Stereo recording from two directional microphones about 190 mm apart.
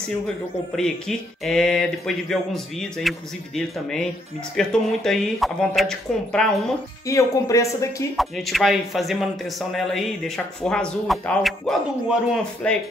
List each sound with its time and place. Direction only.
0.7 s speech: centre (ahead or behind)
7.1 s speech: 15° left (ahead or behind)
8.2 s speech: centre (ahead or behind)